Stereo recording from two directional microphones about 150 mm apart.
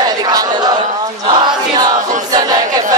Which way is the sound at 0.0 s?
25° right (ahead or behind).